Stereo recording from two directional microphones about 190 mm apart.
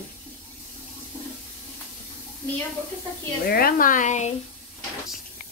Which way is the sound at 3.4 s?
50° left (ahead or behind).